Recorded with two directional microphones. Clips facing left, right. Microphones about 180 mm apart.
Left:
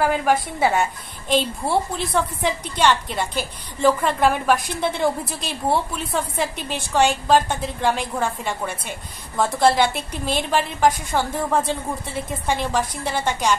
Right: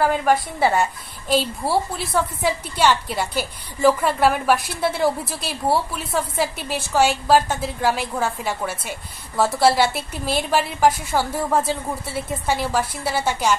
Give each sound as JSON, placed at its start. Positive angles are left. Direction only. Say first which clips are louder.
{"t": 0.0, "sound": "a woman's voice", "louder": "right 1 dB", "side_deg": 0}